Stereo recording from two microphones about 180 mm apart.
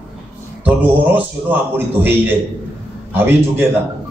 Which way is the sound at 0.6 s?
10° right (ahead or behind).